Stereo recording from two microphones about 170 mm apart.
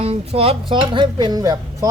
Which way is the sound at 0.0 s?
35° right (ahead or behind).